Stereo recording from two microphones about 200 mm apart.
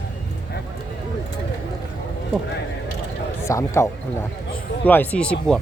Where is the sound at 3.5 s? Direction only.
15° left (ahead or behind).